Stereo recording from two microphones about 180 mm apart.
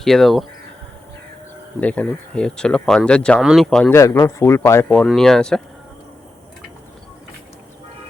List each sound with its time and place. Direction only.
0.0 s speech: centre (ahead or behind)
1.8 s speech: 5° left (ahead or behind)
3.8 s speech: 15° left (ahead or behind)